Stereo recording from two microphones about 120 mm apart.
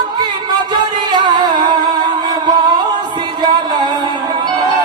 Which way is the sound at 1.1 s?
40° right (ahead or behind).